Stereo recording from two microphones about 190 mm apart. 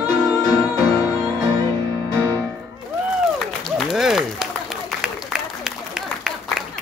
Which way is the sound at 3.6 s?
Centre (ahead or behind).